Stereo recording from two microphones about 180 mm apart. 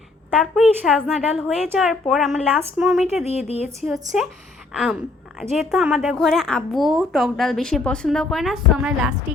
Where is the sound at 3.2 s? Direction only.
35° left (ahead or behind).